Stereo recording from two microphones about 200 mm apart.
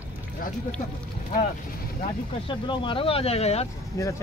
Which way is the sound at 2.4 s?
25° left (ahead or behind).